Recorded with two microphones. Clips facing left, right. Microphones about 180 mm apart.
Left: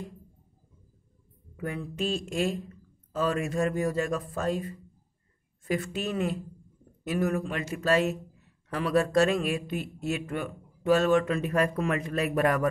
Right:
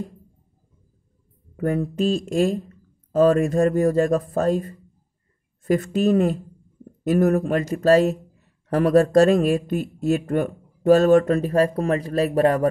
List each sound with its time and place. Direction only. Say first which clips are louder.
1.6 s speech: right 10 dB; 45° right (ahead or behind); by 12.6 s 30° right (ahead or behind)